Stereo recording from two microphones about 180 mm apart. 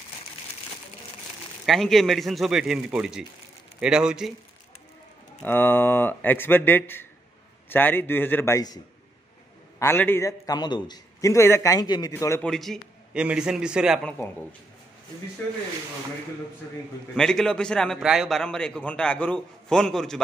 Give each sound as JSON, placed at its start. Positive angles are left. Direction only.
{"t": 1.7, "sound": "a man's voice", "side_deg": 0}
{"t": 5.4, "sound": "a man's voice", "side_deg": 10}
{"t": 12.4, "sound": "a man's voice", "side_deg": 0}
{"t": 17.1, "sound": "a man's voice", "side_deg": 5}